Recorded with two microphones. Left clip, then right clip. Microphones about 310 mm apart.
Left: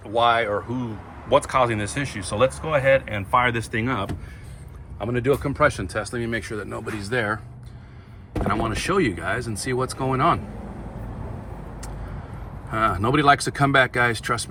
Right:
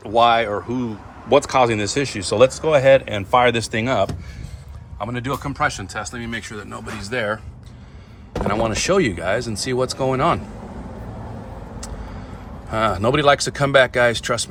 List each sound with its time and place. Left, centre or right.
0.0 s speech: centre
8.4 s speech: centre
12.7 s speech: centre